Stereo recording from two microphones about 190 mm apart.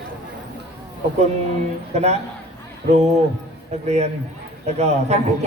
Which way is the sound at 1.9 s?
35° right (ahead or behind).